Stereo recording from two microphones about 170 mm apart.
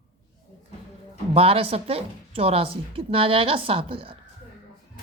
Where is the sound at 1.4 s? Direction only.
35° right (ahead or behind).